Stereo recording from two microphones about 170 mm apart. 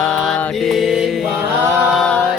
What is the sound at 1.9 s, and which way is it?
Chant, 5° left (ahead or behind).